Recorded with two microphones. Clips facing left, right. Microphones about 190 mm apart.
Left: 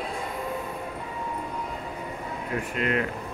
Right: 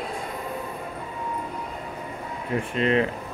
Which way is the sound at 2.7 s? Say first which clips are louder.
Right 5 dB; 25° right (ahead or behind).